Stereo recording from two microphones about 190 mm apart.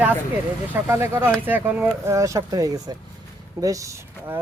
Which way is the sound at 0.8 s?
10° right (ahead or behind).